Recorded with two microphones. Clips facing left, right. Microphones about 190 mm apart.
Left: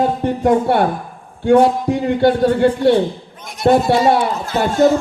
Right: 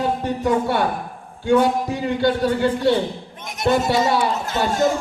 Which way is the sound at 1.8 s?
55° left (ahead or behind).